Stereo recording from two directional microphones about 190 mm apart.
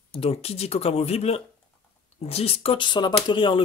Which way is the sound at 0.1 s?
30° left (ahead or behind).